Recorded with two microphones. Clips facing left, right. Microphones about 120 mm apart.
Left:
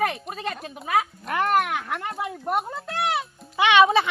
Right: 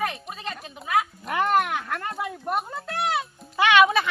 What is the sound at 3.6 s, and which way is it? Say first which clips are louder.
Speech: left 1 dB; 20° left (ahead or behind).